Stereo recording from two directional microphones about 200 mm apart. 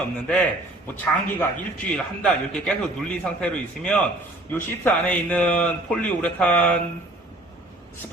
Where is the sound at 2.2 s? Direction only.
5° left (ahead or behind).